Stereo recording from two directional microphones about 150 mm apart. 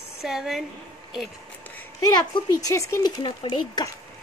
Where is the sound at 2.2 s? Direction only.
25° left (ahead or behind).